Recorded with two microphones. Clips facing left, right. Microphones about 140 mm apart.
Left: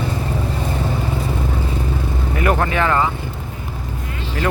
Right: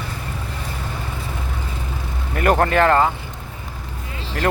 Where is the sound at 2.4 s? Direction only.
45° right (ahead or behind).